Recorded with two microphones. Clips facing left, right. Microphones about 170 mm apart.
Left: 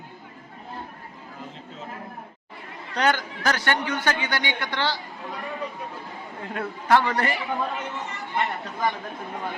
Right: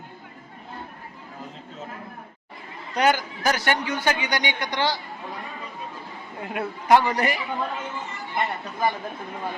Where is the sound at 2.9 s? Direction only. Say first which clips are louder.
Right 2 dB; 10° right (ahead or behind).